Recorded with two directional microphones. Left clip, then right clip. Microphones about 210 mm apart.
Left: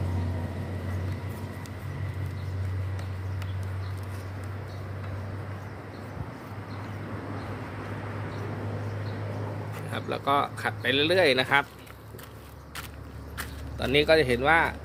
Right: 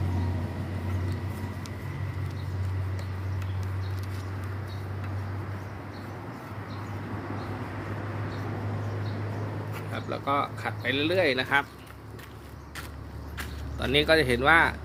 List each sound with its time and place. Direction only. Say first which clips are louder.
9.9 s speech: left 3 dB; 50° left (ahead or behind)
13.7 s speech: left 1 dB; 15° left (ahead or behind); by 14.8 s centre (ahead or behind)